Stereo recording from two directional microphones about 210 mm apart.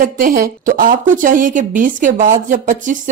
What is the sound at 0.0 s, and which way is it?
A woman's voice, 40° right (ahead or behind).